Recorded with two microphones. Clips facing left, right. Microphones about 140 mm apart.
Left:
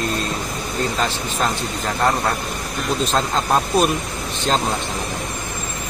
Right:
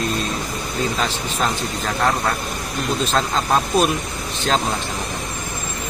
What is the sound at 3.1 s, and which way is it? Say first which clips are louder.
Speech: even; 5° left (ahead or behind).